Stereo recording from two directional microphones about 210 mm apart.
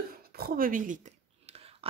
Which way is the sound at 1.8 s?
25° right (ahead or behind).